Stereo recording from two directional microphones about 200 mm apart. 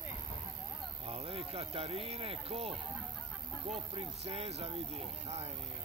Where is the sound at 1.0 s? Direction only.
30° right (ahead or behind).